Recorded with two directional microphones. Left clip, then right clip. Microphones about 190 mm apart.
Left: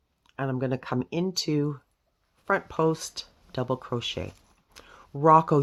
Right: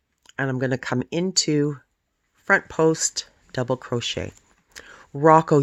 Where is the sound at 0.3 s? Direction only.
40° right (ahead or behind).